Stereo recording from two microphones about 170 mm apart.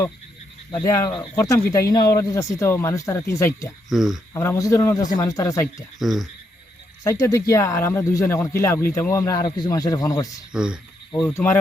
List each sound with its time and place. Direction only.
0.7 s a man's voice: 20° left (ahead or behind)
3.8 s speech: centre (ahead or behind)
4.4 s a man's voice: 15° left (ahead or behind)
6.0 s speech: centre (ahead or behind)
7.0 s a man's voice: 20° left (ahead or behind)
10.5 s speech: 5° right (ahead or behind)